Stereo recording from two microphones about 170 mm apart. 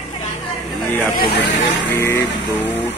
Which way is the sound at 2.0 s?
15° left (ahead or behind).